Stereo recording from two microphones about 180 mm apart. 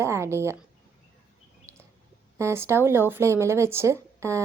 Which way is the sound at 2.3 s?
15° right (ahead or behind).